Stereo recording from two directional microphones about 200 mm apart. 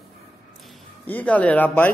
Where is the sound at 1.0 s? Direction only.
10° left (ahead or behind).